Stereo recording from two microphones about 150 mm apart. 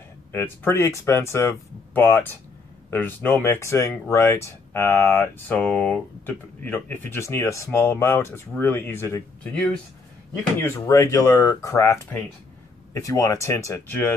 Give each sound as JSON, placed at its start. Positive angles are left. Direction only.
{"t": 0.3, "sound": "speech", "side_deg": 15}
{"t": 10.6, "sound": "speech", "side_deg": 20}